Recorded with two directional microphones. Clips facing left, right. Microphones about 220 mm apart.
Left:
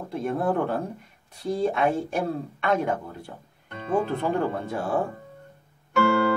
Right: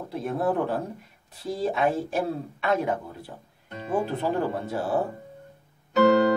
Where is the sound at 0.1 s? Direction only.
Centre (ahead or behind).